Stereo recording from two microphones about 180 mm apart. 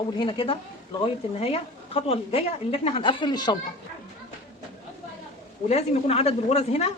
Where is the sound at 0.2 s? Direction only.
30° left (ahead or behind).